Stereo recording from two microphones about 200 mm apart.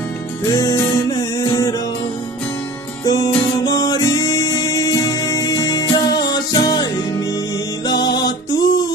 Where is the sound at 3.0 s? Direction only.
20° left (ahead or behind).